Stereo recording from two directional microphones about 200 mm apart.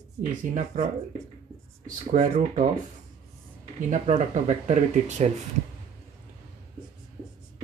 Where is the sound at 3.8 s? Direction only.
35° right (ahead or behind).